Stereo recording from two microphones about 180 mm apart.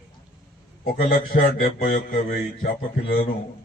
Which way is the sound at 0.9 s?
50° left (ahead or behind).